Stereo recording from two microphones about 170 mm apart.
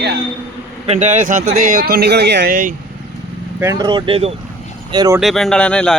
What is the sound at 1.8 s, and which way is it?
Speech, 70° right (ahead or behind).